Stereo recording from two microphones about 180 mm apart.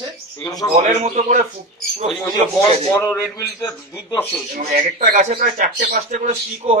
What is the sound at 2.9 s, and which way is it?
A man's voice, 15° left (ahead or behind).